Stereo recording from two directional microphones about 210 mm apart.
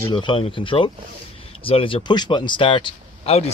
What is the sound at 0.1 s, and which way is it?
Speech, 25° left (ahead or behind).